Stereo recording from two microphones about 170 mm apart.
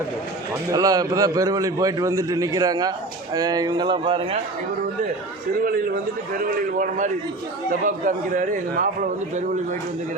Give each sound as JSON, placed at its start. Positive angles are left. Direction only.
{"t": 0.7, "sound": "a man's voice", "side_deg": -20}
{"t": 6.7, "sound": "a man's voice", "side_deg": -50}